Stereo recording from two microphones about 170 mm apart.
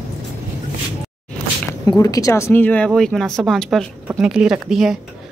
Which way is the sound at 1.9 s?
20° left (ahead or behind).